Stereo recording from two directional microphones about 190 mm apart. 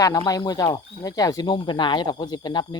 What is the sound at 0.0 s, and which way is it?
Speech, 20° left (ahead or behind).